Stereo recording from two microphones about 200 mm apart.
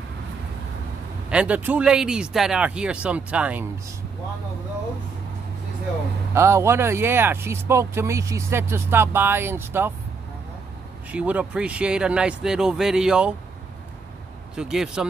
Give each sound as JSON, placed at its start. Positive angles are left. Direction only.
{"t": 1.3, "sound": "speech", "side_deg": -5}
{"t": 6.3, "sound": "speech", "side_deg": -15}
{"t": 11.1, "sound": "speech", "side_deg": -5}
{"t": 14.5, "sound": "speech", "side_deg": -5}